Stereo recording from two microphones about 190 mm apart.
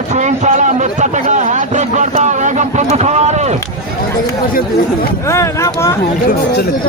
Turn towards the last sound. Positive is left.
turn(degrees=15)  # may be behind; listen again after turning